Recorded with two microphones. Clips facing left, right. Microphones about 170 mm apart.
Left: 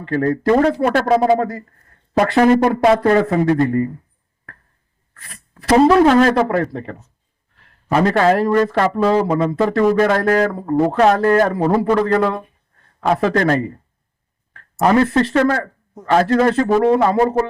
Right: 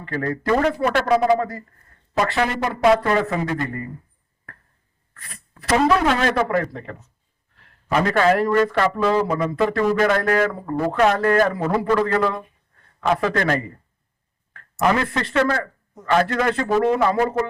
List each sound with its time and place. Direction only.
0.3 s speech: 30° left (ahead or behind)
2.1 s speech: 45° left (ahead or behind)
5.3 s speech: 30° left (ahead or behind)